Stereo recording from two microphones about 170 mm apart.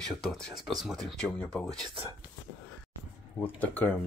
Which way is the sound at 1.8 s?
30° right (ahead or behind).